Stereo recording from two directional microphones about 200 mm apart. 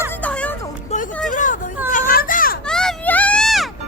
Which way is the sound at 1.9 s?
45° left (ahead or behind).